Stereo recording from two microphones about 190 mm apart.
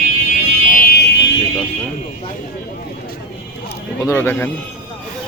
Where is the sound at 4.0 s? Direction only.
10° left (ahead or behind).